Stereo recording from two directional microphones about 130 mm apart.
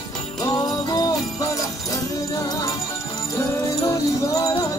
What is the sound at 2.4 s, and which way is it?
Music, 30° left (ahead or behind).